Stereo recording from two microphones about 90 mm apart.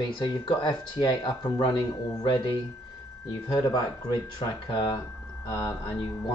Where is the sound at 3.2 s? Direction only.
45° left (ahead or behind).